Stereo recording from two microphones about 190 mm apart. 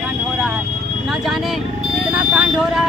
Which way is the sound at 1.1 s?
Centre (ahead or behind).